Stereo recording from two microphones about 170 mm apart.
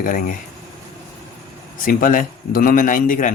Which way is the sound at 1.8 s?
55° left (ahead or behind).